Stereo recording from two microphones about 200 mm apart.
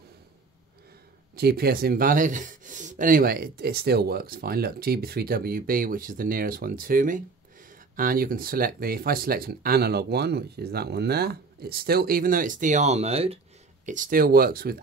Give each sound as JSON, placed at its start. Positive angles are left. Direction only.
{"t": 1.3, "sound": "speech", "side_deg": -50}
{"t": 13.8, "sound": "speech", "side_deg": -40}